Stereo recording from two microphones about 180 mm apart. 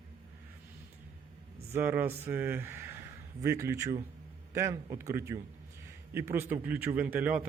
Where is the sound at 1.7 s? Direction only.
10° right (ahead or behind).